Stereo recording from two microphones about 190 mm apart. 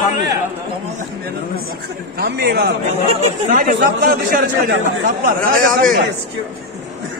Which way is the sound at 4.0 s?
55° right (ahead or behind).